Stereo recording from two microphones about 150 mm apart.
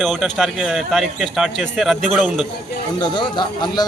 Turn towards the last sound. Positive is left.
turn(degrees=30)  # may be behind; listen again after turning